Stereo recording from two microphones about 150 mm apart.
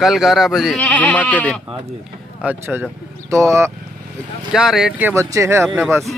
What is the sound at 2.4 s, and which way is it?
Speech, 10° right (ahead or behind).